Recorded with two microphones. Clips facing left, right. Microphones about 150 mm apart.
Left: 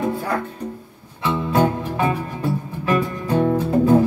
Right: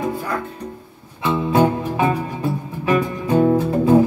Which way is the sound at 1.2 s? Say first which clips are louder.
Right 2 dB; 10° right (ahead or behind).